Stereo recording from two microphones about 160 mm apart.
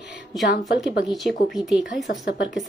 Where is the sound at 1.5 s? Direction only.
5° right (ahead or behind).